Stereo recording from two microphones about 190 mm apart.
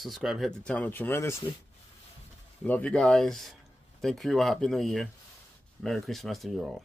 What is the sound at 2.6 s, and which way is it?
Speech, 5° left (ahead or behind).